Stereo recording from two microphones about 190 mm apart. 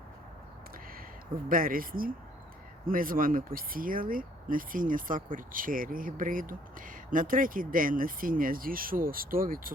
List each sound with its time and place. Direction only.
1.5 s speech: 50° right (ahead or behind)